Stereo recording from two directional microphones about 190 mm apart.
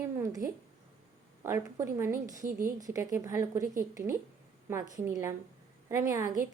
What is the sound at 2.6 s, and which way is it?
A woman's voice, 15° right (ahead or behind).